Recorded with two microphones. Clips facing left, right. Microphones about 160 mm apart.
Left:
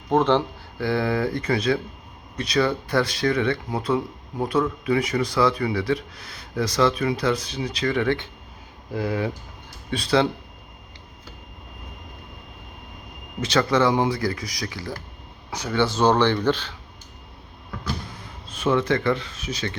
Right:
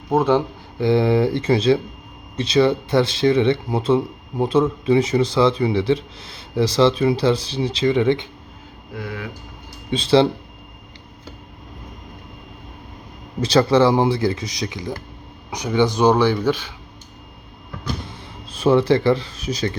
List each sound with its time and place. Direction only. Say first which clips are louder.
0.1 s speech: right 2 dB; 10° right (ahead or behind)
0.8 s speech: right 6 dB; 25° right (ahead or behind)
9.0 s speech: left 6 dB; 30° left (ahead or behind)
9.9 s speech: right 5 dB; 25° right (ahead or behind)
13.4 s speech: right 5 dB; 35° right (ahead or behind); by 16.7 s 10° right (ahead or behind)
18.5 s speech: right 6 dB; 35° right (ahead or behind)